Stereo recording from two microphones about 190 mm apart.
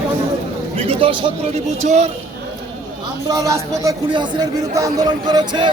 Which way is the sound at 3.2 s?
15° right (ahead or behind).